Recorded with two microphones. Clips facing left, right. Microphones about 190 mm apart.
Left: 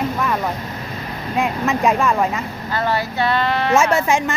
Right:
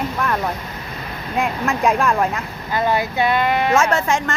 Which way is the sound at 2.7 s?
15° right (ahead or behind).